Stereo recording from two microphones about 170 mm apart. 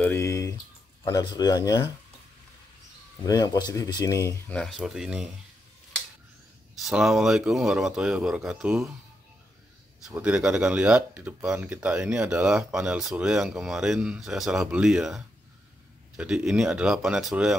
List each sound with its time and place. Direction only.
0.0 s a sound: 15° left (ahead or behind)
1.0 s speech: 20° left (ahead or behind)
3.3 s speech: 25° left (ahead or behind)
4.6 s speech: centre (ahead or behind)
6.9 s speech: 5° right (ahead or behind)
10.0 s speech: 5° right (ahead or behind)